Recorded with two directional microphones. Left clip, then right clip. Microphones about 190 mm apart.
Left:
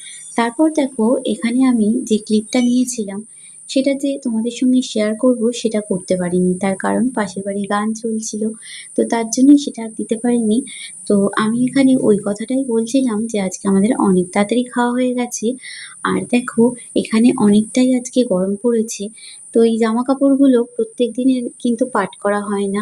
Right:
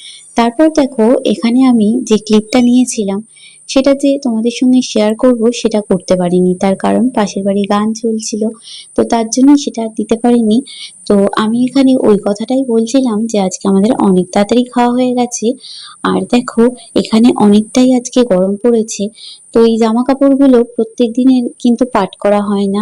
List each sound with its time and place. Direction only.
0.4 s speech: 30° right (ahead or behind)